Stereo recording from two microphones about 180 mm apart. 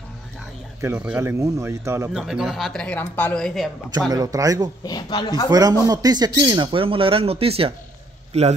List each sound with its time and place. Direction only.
0.7 s speech: 15° right (ahead or behind)
2.1 s speech: centre (ahead or behind)
4.1 s speech: 20° right (ahead or behind)
4.8 s speech: 25° left (ahead or behind)
5.5 s speech: 20° right (ahead or behind)